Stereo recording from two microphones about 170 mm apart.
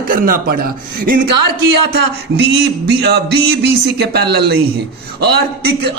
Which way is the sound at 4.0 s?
75° right (ahead or behind).